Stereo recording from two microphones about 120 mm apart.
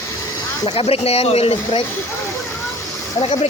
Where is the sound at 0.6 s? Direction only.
55° left (ahead or behind).